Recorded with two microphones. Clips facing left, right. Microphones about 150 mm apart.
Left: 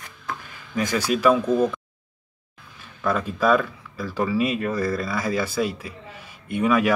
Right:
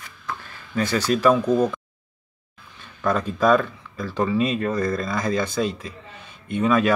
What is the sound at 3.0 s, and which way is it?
Speech, 10° left (ahead or behind).